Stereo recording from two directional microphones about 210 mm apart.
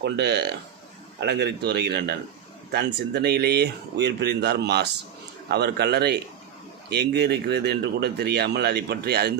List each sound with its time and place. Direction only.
0.0 s speech: 55° right (ahead or behind)